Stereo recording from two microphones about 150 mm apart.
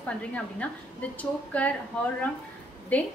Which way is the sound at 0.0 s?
10° left (ahead or behind).